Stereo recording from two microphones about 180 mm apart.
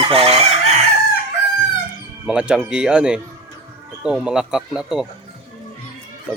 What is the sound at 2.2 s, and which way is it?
Speech, 5° right (ahead or behind).